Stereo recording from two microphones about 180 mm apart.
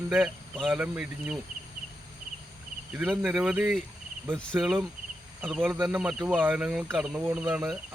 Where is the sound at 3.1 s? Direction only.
Centre (ahead or behind).